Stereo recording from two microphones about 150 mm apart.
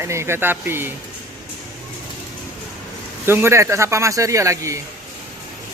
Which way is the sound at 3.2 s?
15° right (ahead or behind).